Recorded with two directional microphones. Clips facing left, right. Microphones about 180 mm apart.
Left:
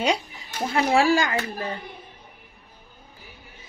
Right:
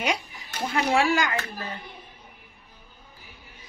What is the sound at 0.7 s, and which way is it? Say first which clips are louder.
Speech: left 3 dB; 35° left (ahead or behind).